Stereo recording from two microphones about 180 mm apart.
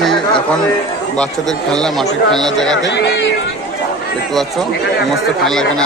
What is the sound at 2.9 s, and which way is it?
Speech, 80° left.